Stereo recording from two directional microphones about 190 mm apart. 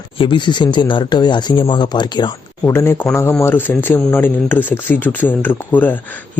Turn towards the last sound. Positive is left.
turn(degrees=10)  # may be behind; listen again after turning